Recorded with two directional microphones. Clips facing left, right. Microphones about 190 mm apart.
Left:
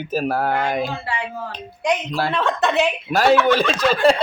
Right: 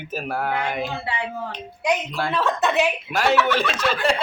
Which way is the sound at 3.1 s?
35° left (ahead or behind).